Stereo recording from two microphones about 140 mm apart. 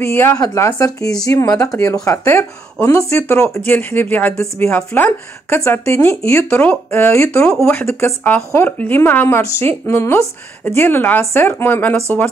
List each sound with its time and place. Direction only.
0.0 s speech: 15° left (ahead or behind)